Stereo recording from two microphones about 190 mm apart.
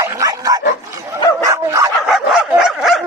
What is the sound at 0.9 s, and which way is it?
Bow-wow, 15° right (ahead or behind).